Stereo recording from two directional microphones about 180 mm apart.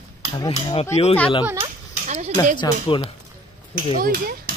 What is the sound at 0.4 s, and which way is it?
Speech, 20° left (ahead or behind).